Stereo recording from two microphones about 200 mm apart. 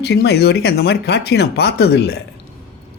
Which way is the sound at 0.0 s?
55° left (ahead or behind).